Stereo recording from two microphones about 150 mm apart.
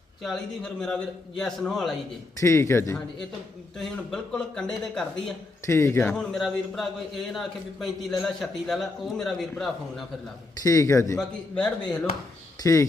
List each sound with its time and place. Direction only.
0.2 s a man's voice: centre (ahead or behind)
2.4 s a man's voice: 20° left (ahead or behind)
3.8 s a man's voice: 5° left (ahead or behind)
5.6 s speech: 20° left (ahead or behind)
6.1 s a man's voice: centre (ahead or behind)
10.6 s a man's voice: 25° left (ahead or behind)
11.2 s a man's voice: 5° left (ahead or behind)
12.6 s a man's voice: 20° left (ahead or behind)